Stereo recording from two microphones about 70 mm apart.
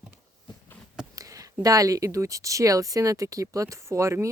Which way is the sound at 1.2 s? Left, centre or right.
Right.